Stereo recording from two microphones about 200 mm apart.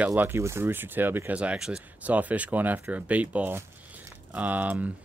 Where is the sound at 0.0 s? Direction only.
10° right (ahead or behind).